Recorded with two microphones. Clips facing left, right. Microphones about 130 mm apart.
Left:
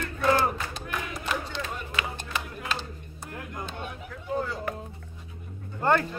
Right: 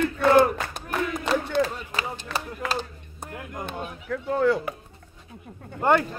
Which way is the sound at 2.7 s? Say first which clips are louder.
Right 6 dB; 50° right (ahead or behind).